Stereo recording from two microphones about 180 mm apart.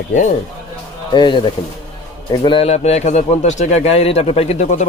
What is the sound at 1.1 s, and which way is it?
Speech, 25° left (ahead or behind).